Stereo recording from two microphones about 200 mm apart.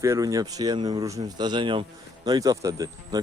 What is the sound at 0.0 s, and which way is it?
Speech, 15° right (ahead or behind).